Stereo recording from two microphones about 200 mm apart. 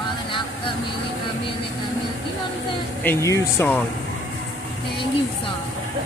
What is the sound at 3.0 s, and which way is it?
Speech, 10° left (ahead or behind).